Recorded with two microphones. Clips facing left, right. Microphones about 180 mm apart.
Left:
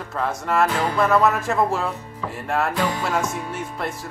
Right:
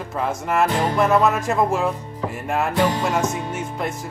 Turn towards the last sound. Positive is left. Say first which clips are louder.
# right 2 dB
turn(degrees=-20)  # may be behind; listen again after turning